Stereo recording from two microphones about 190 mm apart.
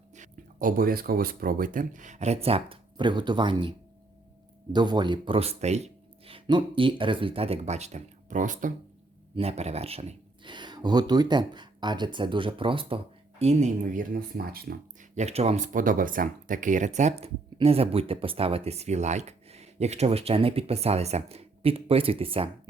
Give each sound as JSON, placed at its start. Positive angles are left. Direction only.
{"t": 0.1, "sound": "speech", "side_deg": -45}
{"t": 9.3, "sound": "speech", "side_deg": -35}
{"t": 15.2, "sound": "speech", "side_deg": -35}